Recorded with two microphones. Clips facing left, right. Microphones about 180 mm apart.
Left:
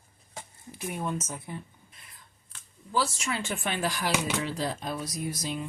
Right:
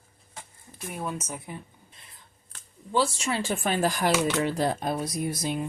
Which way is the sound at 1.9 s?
25° right (ahead or behind).